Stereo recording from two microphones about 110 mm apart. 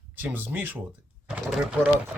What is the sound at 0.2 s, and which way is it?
Speech, 15° right (ahead or behind).